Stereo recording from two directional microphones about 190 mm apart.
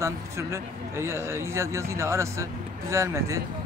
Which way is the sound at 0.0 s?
15° right (ahead or behind).